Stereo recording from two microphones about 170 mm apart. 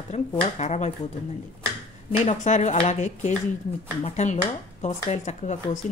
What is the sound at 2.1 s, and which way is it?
Speech, 45° left (ahead or behind).